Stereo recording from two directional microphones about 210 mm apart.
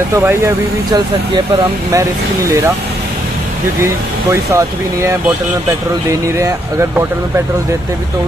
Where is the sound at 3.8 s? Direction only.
15° right (ahead or behind).